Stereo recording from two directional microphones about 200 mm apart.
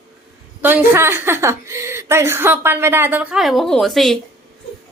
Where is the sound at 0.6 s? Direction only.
10° right (ahead or behind).